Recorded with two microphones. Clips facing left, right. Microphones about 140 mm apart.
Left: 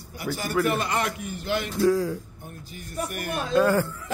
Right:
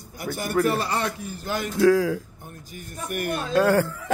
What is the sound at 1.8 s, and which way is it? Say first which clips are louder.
Speech: right 4 dB; 90° right.